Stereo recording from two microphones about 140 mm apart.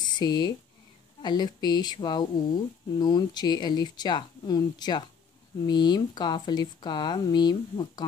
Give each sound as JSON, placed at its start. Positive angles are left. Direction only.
{"t": 0.1, "sound": "speech", "side_deg": 30}